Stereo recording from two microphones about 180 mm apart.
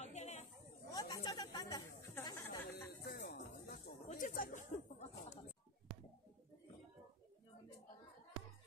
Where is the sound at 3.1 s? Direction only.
50° left (ahead or behind).